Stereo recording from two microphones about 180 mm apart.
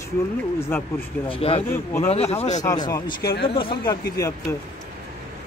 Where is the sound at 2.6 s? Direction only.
20° left (ahead or behind).